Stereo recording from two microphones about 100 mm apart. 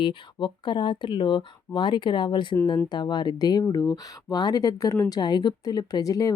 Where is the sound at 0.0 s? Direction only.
55° left (ahead or behind).